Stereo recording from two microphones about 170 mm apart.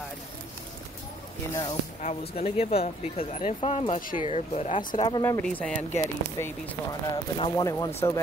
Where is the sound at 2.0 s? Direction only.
40° left (ahead or behind).